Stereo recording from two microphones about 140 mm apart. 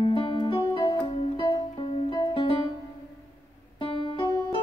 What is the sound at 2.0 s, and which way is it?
Music, 30° left (ahead or behind).